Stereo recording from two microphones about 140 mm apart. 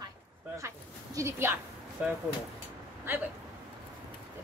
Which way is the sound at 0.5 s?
20° right (ahead or behind).